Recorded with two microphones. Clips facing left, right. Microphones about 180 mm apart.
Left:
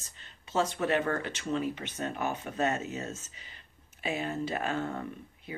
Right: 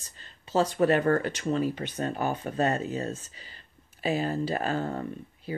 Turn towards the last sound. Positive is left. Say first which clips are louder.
# right 6 dB
turn(degrees=-35)  # may be behind; listen again after turning